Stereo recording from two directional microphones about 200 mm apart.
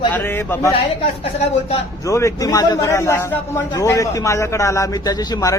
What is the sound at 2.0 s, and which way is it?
A man's voice, 15° left (ahead or behind).